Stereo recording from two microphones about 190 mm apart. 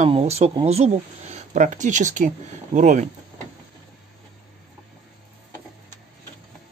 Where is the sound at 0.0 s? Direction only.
35° right (ahead or behind).